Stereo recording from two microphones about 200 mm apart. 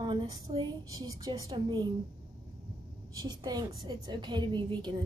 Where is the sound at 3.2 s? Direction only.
20° right (ahead or behind).